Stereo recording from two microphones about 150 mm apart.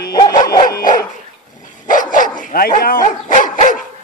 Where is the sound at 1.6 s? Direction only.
60° left (ahead or behind).